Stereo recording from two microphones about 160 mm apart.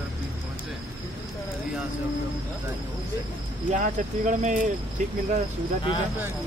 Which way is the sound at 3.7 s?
50° right (ahead or behind).